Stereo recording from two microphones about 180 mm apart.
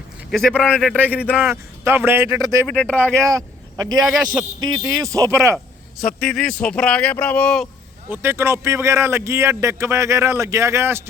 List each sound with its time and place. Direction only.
0.3 s speech: 5° left (ahead or behind)
1.1 s a man's voice: 10° right (ahead or behind)
2.6 s speech: 5° left (ahead or behind)
3.2 s speech: 20° right (ahead or behind)
4.0 s speech: centre (ahead or behind)
4.6 s speech: 20° right (ahead or behind)
6.1 s speech: 5° left (ahead or behind)
8.1 s a man's voice: 15° right (ahead or behind)